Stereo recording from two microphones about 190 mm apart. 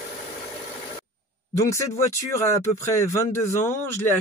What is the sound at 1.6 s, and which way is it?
Speech, 15° left (ahead or behind).